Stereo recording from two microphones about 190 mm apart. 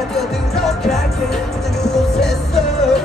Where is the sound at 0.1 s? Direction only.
Centre (ahead or behind).